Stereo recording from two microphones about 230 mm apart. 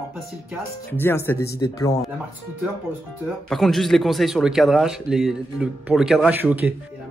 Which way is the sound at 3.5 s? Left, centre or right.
Centre.